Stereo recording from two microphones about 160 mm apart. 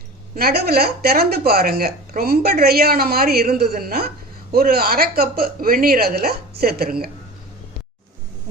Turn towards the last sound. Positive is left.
turn(degrees=-70)  # may be behind; listen again after turning